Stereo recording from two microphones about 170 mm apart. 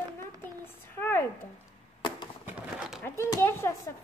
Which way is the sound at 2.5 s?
5° right (ahead or behind).